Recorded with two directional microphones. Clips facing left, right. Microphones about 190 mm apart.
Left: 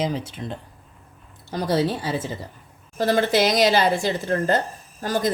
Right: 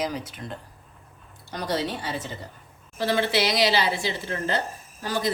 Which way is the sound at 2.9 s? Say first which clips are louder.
Left 4 dB; 45° left (ahead or behind).